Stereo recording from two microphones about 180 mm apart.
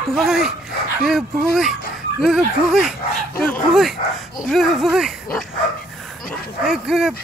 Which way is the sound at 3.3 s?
10° left (ahead or behind).